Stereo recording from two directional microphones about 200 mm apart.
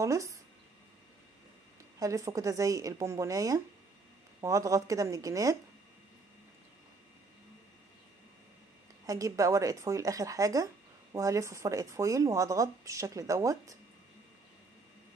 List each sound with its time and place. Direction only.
0.0 s speech: 15° right (ahead or behind)
2.0 s speech: 15° right (ahead or behind)
9.0 s speech: 15° right (ahead or behind)